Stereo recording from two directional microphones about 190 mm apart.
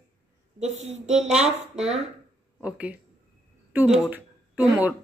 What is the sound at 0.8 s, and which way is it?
Speech, 35° right (ahead or behind).